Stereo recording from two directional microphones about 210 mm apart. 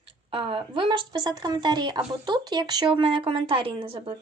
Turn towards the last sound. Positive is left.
turn(degrees=-25)  # may be behind; listen again after turning